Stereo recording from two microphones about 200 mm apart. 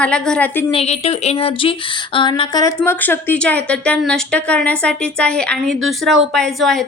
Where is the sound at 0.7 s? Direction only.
30° left (ahead or behind).